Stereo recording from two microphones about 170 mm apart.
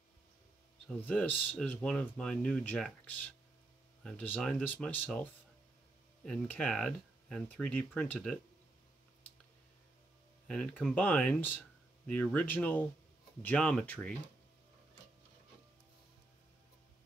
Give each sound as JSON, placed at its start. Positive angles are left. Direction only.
{"t": 0.8, "sound": "speech", "side_deg": 5}
{"t": 10.5, "sound": "speech", "side_deg": 5}